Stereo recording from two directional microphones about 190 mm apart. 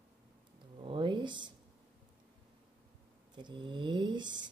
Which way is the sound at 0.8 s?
25° right (ahead or behind).